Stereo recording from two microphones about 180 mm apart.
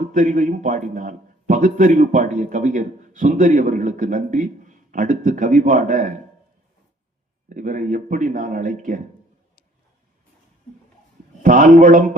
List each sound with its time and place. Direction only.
0.0 s a man's voice: 45° right (ahead or behind)
7.5 s a man's voice: 45° right (ahead or behind)
11.4 s a man's voice: 50° right (ahead or behind)